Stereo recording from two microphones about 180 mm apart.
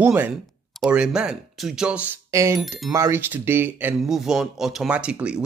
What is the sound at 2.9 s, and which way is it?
Speech, 15° right (ahead or behind).